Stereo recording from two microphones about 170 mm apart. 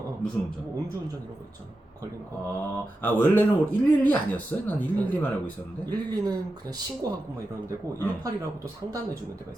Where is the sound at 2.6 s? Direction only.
10° left (ahead or behind).